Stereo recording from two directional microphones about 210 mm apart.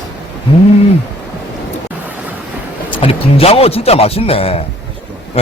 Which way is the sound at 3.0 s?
30° left (ahead or behind).